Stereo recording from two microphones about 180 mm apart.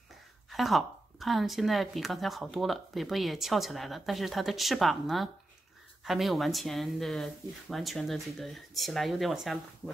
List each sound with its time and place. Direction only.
0.5 s a woman's voice: centre (ahead or behind)